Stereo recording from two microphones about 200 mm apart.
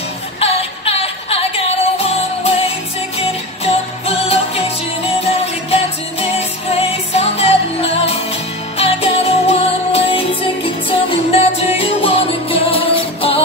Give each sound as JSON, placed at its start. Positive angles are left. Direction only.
{"t": 0.4, "sound": "music", "side_deg": 30}